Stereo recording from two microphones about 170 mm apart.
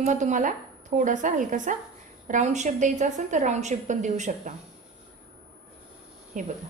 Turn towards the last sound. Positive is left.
turn(degrees=-50)  # may be behind; listen again after turning